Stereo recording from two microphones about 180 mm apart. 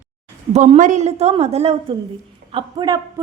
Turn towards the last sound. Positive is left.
turn(degrees=-20)  # may be behind; listen again after turning